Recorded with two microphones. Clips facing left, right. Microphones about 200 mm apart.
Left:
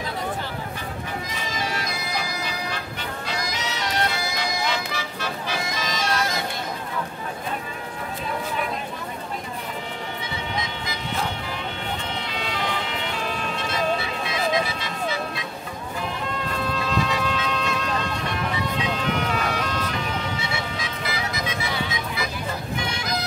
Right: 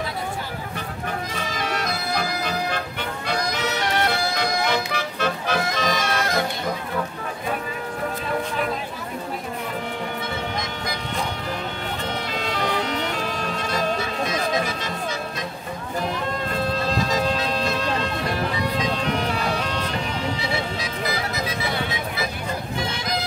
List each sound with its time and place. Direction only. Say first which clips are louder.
1.6 s bagpipes: right 3 dB; 60° right (ahead or behind)
3.3 s music: right 6 dB; 60° right (ahead or behind)
12.3 s music: right 3 dB; 45° right (ahead or behind)
16.7 s music: even; 35° right (ahead or behind)
18.8 s bagpipes: even; 35° right (ahead or behind)
20.3 s music: right 3 dB; 35° right (ahead or behind)